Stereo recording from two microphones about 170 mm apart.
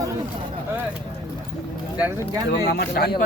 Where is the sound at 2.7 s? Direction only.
65° left (ahead or behind).